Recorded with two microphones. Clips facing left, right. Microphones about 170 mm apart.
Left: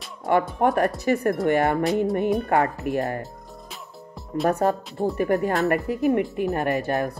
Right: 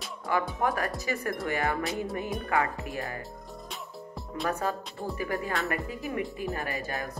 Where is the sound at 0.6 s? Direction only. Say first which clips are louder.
Left 8 dB; 55° left (ahead or behind).